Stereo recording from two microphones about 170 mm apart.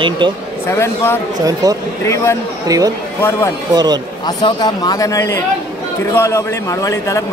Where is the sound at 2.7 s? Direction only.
20° right (ahead or behind).